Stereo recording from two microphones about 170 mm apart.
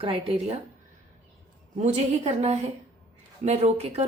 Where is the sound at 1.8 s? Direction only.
40° right (ahead or behind).